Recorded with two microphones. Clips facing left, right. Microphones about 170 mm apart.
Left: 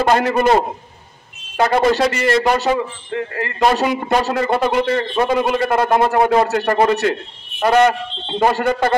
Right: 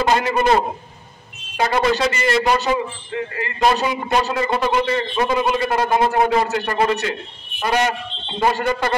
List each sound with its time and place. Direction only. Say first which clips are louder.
0.0 s a man's voice: left 3 dB; 55° left (ahead or behind)
1.6 s a man's voice: left 3 dB; 55° left (ahead or behind)
6.6 s a man's voice: left 4 dB; 60° left (ahead or behind)